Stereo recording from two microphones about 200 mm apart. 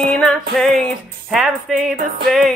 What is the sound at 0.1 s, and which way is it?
Music, 5° left (ahead or behind).